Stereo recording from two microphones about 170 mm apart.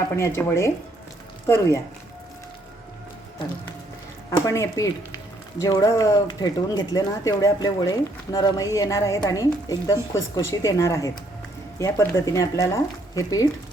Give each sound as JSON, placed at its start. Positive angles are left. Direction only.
{"t": 0.2, "sound": "speech", "side_deg": 15}
{"t": 4.3, "sound": "speech", "side_deg": 20}